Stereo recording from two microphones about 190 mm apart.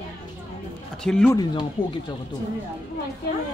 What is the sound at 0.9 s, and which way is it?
Speech, 5° left (ahead or behind).